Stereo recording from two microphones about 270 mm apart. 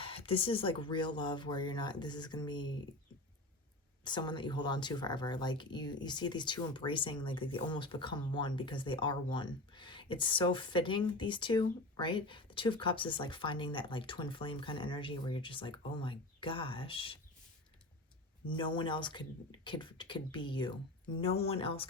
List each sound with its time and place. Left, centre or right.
0.0 s speech: centre
4.0 s speech: centre
18.4 s speech: centre